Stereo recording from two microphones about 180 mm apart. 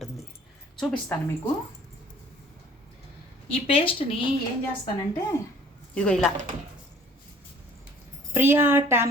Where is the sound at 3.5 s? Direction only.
30° left (ahead or behind).